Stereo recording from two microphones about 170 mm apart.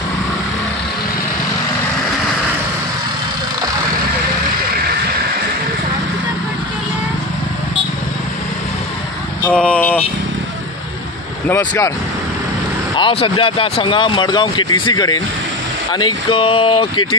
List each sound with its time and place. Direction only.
9.5 s vehicle: 5° left (ahead or behind)
11.4 s speech: 15° left (ahead or behind)
12.9 s speech: 30° left (ahead or behind)